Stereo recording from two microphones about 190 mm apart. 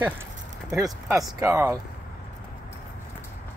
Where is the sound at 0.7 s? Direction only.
15° right (ahead or behind).